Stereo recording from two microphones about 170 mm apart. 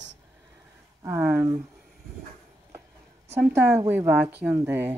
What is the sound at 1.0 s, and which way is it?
Speech, 15° right (ahead or behind).